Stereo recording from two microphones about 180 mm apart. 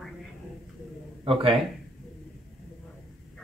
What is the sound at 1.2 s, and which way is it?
Speech, 30° right (ahead or behind).